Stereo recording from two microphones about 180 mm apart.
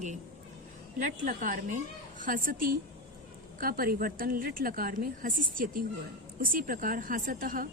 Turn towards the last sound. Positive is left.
turn(degrees=-50)  # may be behind; listen again after turning